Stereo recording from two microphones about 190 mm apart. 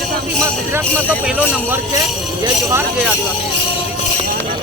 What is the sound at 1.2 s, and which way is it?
Speech, 5° right (ahead or behind).